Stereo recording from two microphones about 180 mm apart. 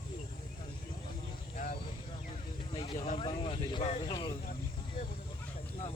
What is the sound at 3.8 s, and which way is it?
Speech, 35° left (ahead or behind).